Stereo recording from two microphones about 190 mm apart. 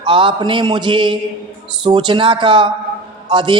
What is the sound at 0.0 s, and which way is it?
Mantra, 25° right (ahead or behind).